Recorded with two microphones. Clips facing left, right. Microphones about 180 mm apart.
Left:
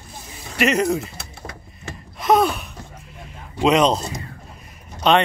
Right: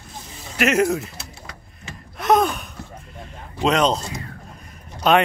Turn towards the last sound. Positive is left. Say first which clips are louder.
# even
turn(degrees=0)  # may be behind; listen again after turning